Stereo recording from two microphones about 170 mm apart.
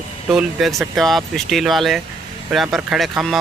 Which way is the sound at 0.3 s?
Centre (ahead or behind).